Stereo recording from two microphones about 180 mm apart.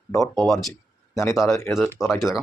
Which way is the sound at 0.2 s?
5° left (ahead or behind).